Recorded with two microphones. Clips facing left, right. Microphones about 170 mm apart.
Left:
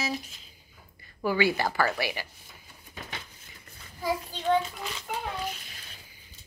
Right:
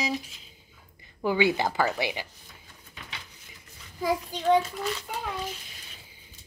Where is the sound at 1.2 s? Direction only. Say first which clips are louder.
Right 2 dB; 20° right (ahead or behind).